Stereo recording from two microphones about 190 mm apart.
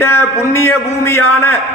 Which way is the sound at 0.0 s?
15° left (ahead or behind).